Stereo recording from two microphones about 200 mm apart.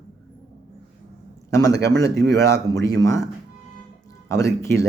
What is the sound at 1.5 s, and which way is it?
A man's voice, 15° left (ahead or behind).